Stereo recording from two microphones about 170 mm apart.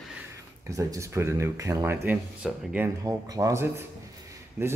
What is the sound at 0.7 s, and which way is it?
Speech, 20° right (ahead or behind).